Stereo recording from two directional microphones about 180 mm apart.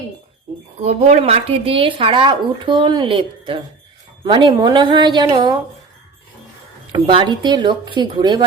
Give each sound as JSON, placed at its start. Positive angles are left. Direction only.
{"t": 0.8, "sound": "speech", "side_deg": -40}
{"t": 6.9, "sound": "speech", "side_deg": -25}